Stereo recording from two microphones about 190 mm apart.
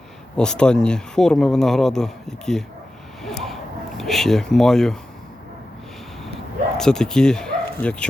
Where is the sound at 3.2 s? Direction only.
Centre (ahead or behind).